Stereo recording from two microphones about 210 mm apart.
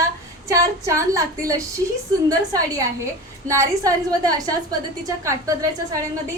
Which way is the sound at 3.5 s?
15° right (ahead or behind).